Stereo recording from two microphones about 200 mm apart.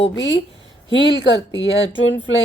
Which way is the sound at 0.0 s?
65° left (ahead or behind).